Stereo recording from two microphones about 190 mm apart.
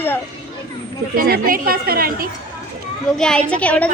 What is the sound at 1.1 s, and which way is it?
Speech, 50° right (ahead or behind).